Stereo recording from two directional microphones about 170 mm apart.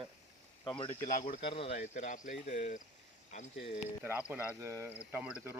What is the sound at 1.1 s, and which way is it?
Speech, 50° left (ahead or behind).